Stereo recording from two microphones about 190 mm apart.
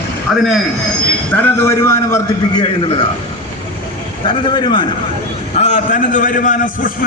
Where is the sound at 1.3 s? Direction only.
10° left (ahead or behind).